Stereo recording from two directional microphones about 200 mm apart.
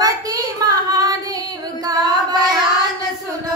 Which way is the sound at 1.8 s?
20° right (ahead or behind).